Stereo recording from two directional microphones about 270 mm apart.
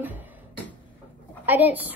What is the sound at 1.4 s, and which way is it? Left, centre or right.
Speech, centre.